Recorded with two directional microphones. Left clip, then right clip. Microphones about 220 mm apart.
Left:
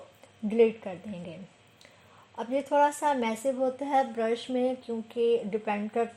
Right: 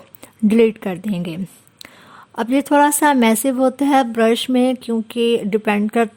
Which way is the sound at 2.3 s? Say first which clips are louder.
Right 11 dB; 45° right (ahead or behind).